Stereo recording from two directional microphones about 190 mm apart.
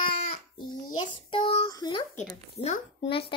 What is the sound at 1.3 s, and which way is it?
Child singing, 30° left (ahead or behind).